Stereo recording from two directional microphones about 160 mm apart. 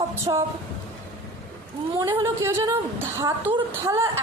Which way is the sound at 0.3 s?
25° right (ahead or behind).